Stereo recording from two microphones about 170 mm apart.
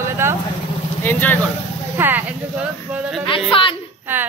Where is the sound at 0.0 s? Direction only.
15° right (ahead or behind).